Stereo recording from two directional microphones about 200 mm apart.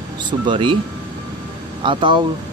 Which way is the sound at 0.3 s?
25° right (ahead or behind).